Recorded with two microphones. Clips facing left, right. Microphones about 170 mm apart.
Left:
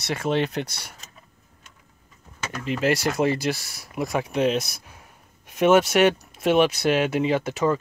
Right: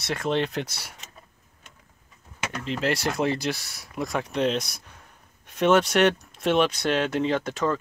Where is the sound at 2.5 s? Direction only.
5° left (ahead or behind).